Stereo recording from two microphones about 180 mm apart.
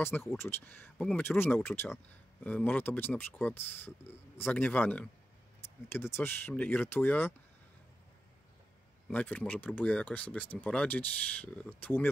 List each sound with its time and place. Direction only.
0.0 s speech: 10° left (ahead or behind)
9.1 s speech: 10° left (ahead or behind)